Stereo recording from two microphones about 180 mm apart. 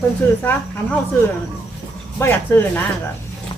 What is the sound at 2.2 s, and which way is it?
Speech, 10° left (ahead or behind).